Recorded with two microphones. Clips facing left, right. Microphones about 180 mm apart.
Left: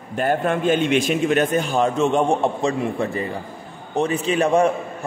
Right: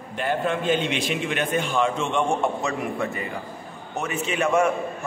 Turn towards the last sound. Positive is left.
turn(degrees=35)  # may be behind; listen again after turning